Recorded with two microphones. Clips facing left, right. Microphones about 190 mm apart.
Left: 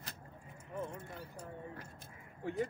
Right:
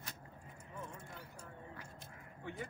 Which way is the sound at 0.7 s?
65° left (ahead or behind).